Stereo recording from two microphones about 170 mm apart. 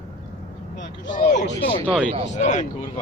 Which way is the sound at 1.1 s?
45° left (ahead or behind).